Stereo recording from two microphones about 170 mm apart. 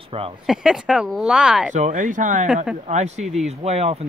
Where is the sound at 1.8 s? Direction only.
45° right (ahead or behind).